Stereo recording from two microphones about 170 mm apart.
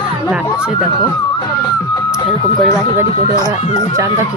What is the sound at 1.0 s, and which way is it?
Speech, 25° left (ahead or behind).